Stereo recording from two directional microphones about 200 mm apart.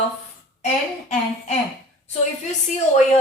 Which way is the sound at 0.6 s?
35° left (ahead or behind).